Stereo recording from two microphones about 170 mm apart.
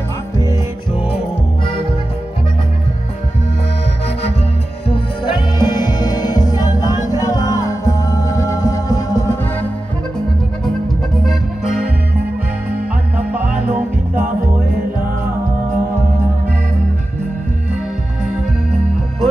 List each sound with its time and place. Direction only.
4.8 s music: 30° left (ahead or behind); by 9.7 s 15° left (ahead or behind)